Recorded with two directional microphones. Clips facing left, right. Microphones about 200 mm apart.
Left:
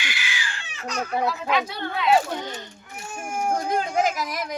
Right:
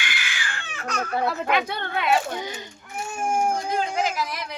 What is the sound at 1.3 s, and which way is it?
Speech, 55° right (ahead or behind).